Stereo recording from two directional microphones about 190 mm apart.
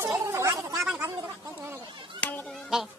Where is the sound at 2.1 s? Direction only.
10° left (ahead or behind).